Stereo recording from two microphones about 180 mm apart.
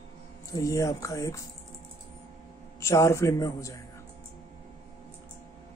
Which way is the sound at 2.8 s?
15° left (ahead or behind).